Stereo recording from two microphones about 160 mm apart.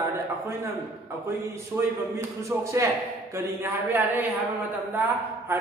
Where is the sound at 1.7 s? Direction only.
10° right (ahead or behind).